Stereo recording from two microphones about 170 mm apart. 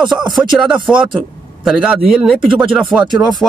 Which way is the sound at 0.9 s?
Centre (ahead or behind).